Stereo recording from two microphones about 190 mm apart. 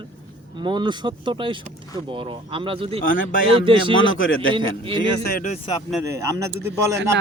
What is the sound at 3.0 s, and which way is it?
Speech, 45° left (ahead or behind).